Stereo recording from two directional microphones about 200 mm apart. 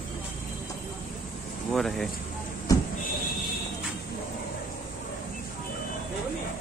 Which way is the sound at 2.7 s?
15° left (ahead or behind).